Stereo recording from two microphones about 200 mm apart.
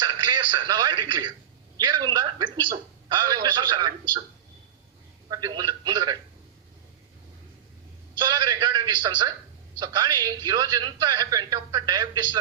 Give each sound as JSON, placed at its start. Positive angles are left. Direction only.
{"t": 0.0, "sound": "a man's voice", "side_deg": -20}
{"t": 5.3, "sound": "a man's voice", "side_deg": -20}
{"t": 8.2, "sound": "a man's voice", "side_deg": -20}